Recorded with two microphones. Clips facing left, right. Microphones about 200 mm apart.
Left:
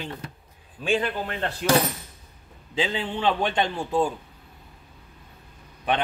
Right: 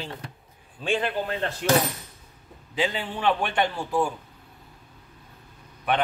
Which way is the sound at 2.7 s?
25° left (ahead or behind).